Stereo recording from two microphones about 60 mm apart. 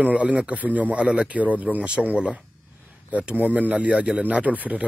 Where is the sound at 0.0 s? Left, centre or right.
Right.